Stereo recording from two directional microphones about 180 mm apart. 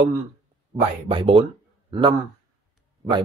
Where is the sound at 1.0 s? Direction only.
30° right (ahead or behind).